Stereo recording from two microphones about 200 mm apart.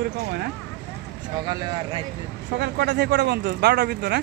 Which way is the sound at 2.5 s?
55° right (ahead or behind).